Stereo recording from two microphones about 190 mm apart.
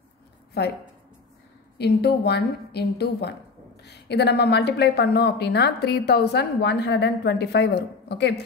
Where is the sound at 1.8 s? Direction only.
60° left (ahead or behind).